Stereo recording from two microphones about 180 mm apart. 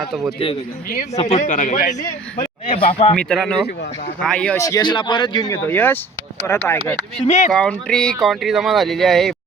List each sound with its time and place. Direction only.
1.1 s a man's voice: 35° left (ahead or behind)
2.7 s speech: 30° left (ahead or behind)
3.2 s speech: 5° left (ahead or behind)
4.6 s speech: 20° left (ahead or behind)
5.6 s speech: 10° left (ahead or behind)
7.3 s speech: 40° left (ahead or behind)
7.5 s speech: 5° left (ahead or behind)